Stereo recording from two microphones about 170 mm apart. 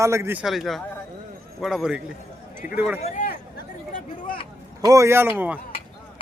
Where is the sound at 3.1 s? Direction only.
60° left (ahead or behind).